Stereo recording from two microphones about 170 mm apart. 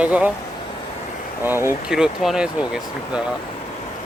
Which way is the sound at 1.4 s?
15° right (ahead or behind).